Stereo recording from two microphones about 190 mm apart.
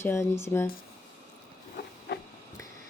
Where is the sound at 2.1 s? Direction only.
65° left (ahead or behind).